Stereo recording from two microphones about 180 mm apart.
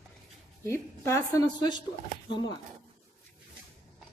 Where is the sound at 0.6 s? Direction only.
15° left (ahead or behind).